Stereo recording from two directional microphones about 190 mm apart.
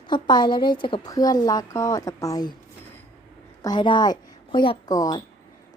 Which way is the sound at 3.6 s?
25° left (ahead or behind).